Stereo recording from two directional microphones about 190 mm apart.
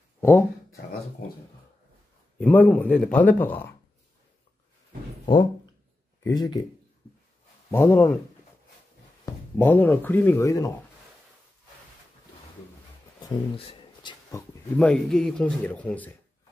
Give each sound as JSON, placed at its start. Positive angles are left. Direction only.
{"t": 0.2, "sound": "a sound", "side_deg": 15}
{"t": 2.4, "sound": "speech", "side_deg": 10}
{"t": 6.2, "sound": "speech", "side_deg": 20}
{"t": 7.7, "sound": "speech", "side_deg": 10}
{"t": 9.2, "sound": "speech", "side_deg": 10}
{"t": 13.2, "sound": "a sound", "side_deg": 25}
{"t": 14.8, "sound": "speech", "side_deg": 5}